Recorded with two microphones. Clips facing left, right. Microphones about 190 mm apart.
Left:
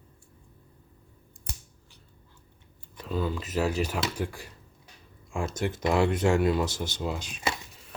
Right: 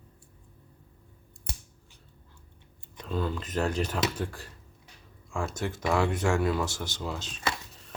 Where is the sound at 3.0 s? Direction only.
5° left (ahead or behind).